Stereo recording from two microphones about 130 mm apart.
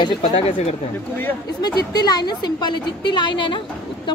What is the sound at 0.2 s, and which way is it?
Speech, 55° left (ahead or behind).